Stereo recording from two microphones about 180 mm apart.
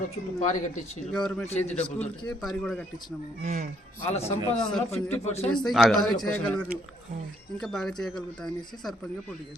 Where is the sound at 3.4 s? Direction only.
50° right (ahead or behind).